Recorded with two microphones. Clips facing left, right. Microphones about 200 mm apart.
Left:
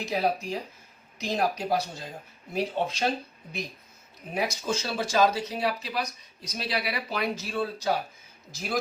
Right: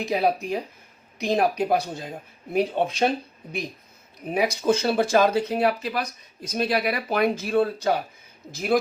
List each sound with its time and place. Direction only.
0.0 s speech: 60° right (ahead or behind)
4.4 s speech: 60° right (ahead or behind)